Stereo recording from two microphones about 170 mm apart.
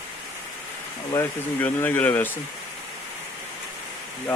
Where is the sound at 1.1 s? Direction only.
10° left (ahead or behind).